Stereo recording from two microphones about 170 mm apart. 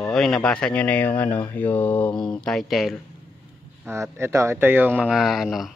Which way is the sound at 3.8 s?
15° right (ahead or behind).